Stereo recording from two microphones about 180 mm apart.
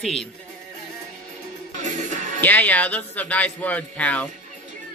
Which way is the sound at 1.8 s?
45° right (ahead or behind).